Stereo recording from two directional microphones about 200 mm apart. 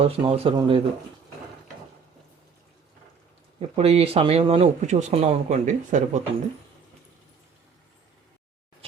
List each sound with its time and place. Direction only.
0.0 s speech: 25° right (ahead or behind)
3.6 s speech: 30° right (ahead or behind)